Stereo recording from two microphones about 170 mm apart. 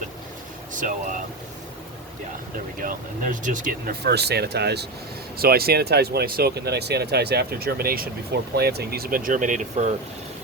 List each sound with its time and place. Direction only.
0.7 s vehicle: 50° right (ahead or behind)
2.7 s speech: 50° right (ahead or behind)
4.0 s speech: 75° right (ahead or behind)
5.4 s speech: 65° right (ahead or behind); by 9.9 s 45° right (ahead or behind)